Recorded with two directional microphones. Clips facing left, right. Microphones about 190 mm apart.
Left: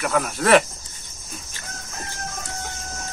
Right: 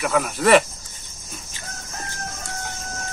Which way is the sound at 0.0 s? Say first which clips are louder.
Right 2 dB; centre (ahead or behind).